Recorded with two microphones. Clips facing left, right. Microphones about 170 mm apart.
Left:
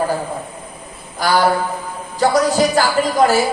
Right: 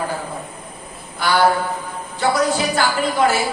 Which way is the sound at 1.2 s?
40° left (ahead or behind).